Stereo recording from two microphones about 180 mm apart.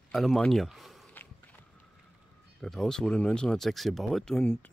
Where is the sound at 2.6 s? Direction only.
5° left (ahead or behind).